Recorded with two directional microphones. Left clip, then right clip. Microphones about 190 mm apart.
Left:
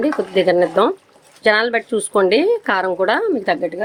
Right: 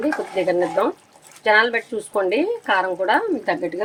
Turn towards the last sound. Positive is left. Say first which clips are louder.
# left 4 dB
turn(degrees=35)  # may be behind; listen again after turning